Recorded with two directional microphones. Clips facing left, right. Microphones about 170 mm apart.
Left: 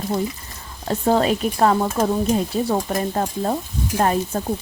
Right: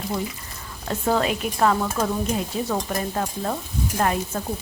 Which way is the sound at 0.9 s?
35° left (ahead or behind).